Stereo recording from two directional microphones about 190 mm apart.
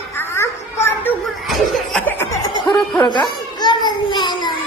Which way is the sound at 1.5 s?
Centre (ahead or behind).